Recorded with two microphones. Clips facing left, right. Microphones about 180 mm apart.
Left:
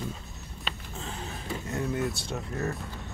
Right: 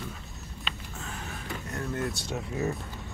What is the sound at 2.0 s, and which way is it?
Speech, centre (ahead or behind).